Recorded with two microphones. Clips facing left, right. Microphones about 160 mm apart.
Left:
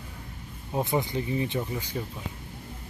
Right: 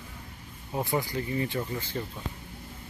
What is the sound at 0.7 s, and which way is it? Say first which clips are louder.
Speech: left 2 dB; 20° left (ahead or behind).